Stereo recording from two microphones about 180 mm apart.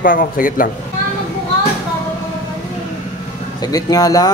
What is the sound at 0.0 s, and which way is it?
Speech, 50° left (ahead or behind).